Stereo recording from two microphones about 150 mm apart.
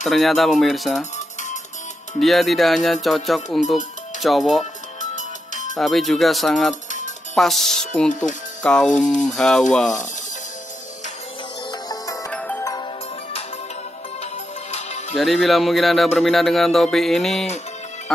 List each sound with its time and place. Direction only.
0.0 s speech: centre (ahead or behind)
2.1 s speech: centre (ahead or behind)
5.1 s music: 55° left (ahead or behind)
5.8 s speech: centre (ahead or behind)
6.7 s music: 55° left (ahead or behind)
7.3 s speech: centre (ahead or behind)
8.2 s music: 60° left (ahead or behind)
9.2 s speech: centre (ahead or behind)
11.9 s music: 25° left (ahead or behind)
12.3 s music: 10° left (ahead or behind)
14.7 s music: 50° left (ahead or behind)
15.1 s speech: centre (ahead or behind)